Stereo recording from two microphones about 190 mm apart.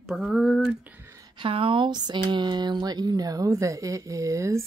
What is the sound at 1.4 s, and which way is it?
Speech, 30° right (ahead or behind).